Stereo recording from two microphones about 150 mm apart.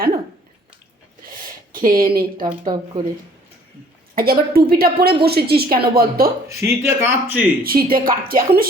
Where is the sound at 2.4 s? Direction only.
30° right (ahead or behind).